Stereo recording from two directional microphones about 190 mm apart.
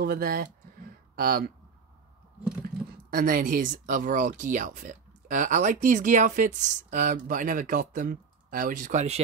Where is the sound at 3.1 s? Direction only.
50° right (ahead or behind).